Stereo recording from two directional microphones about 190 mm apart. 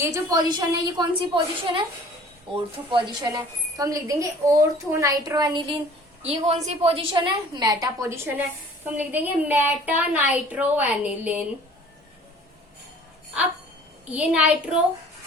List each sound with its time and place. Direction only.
0.0 s a woman's voice: 20° right (ahead or behind)
2.9 s a woman's voice: 20° right (ahead or behind)
6.2 s a woman's voice: 35° right (ahead or behind); by 11.4 s 5° right (ahead or behind)
14.1 s a woman's voice: 5° right (ahead or behind)